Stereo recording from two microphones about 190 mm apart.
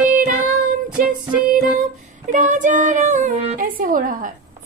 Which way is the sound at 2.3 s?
40° right (ahead or behind).